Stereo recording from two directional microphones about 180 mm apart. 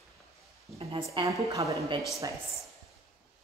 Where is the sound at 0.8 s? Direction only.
30° right (ahead or behind).